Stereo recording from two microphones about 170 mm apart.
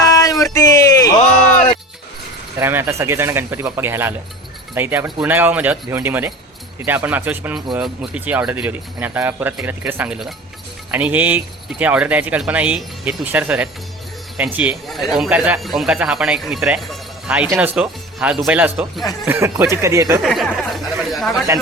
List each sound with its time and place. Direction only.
0.0 s a sound: 20° left (ahead or behind)
2.6 s speech: 15° right (ahead or behind)
20.2 s speech: centre (ahead or behind)